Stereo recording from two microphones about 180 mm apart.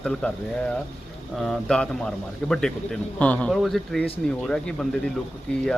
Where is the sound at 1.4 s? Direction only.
Centre (ahead or behind).